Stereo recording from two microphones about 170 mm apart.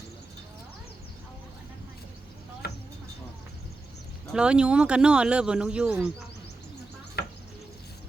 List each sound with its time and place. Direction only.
4.3 s speech: 5° right (ahead or behind)
7.2 s cricket: 70° left (ahead or behind)